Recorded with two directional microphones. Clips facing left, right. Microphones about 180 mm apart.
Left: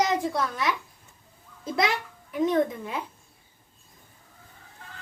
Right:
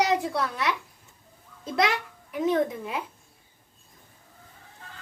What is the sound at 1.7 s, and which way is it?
A child's voice, centre (ahead or behind).